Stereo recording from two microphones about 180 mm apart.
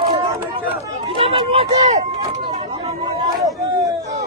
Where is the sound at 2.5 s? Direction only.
35° right (ahead or behind).